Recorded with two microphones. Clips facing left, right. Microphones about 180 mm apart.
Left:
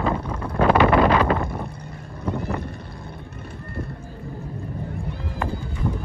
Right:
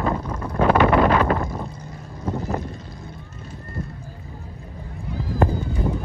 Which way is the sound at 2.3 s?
60° left (ahead or behind).